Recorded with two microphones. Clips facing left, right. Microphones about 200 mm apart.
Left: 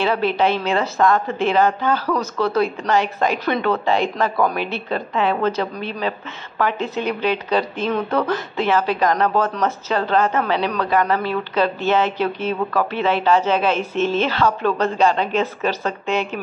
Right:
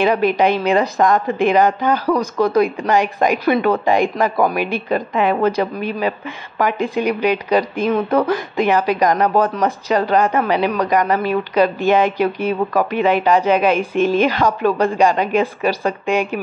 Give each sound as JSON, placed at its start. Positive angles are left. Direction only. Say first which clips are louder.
{"t": 0.0, "sound": "a woman's voice", "louder": "right 4 dB", "side_deg": -15}